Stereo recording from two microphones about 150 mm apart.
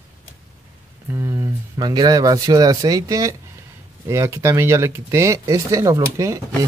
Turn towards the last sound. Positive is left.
turn(degrees=-20)  # may be behind; listen again after turning